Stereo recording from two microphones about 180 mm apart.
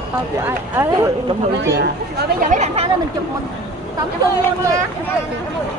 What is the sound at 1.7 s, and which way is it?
Speech, 65° right (ahead or behind).